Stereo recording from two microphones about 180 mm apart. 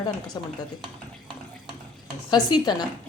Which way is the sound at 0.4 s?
25° left (ahead or behind).